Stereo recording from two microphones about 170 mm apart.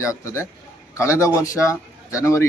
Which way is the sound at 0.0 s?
15° left (ahead or behind).